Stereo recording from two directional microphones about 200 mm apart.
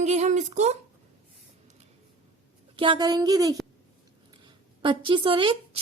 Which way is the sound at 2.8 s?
25° right (ahead or behind).